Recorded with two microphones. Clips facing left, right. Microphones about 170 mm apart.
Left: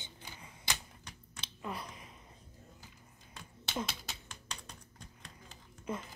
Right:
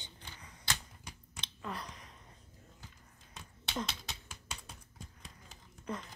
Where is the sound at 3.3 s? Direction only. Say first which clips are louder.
Left 1 dB; centre (ahead or behind).